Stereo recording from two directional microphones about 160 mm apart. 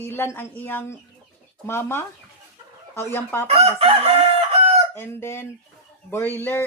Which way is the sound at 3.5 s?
40° right (ahead or behind).